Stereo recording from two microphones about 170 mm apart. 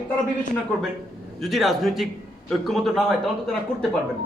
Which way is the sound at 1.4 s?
Centre (ahead or behind).